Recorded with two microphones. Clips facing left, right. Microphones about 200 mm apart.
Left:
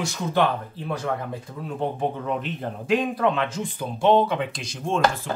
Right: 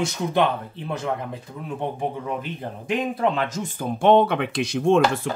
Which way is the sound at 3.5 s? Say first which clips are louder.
Right 2 dB; 45° right (ahead or behind).